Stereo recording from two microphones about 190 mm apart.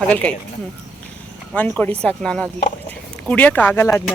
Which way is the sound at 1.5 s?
5° left (ahead or behind).